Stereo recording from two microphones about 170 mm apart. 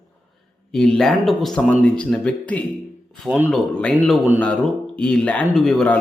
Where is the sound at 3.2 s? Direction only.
10° right (ahead or behind).